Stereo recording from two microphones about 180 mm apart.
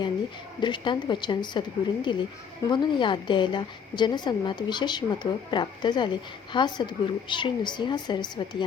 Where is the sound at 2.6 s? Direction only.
25° left (ahead or behind).